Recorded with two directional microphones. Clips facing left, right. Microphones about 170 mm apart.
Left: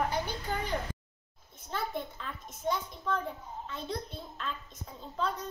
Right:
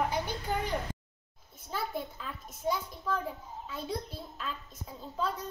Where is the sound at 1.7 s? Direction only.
5° right (ahead or behind).